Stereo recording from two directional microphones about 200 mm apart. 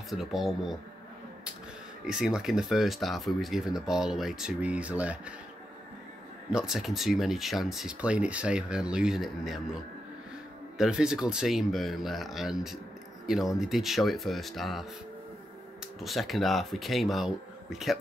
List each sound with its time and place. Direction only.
0.1 s speech: centre (ahead or behind)
2.0 s speech: 5° right (ahead or behind)
6.5 s speech: 5° right (ahead or behind)
10.8 s speech: 5° right (ahead or behind)
16.0 s speech: centre (ahead or behind)